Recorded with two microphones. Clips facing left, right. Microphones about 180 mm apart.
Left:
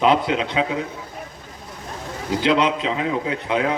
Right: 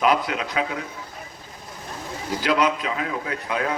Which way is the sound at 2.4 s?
25° left (ahead or behind).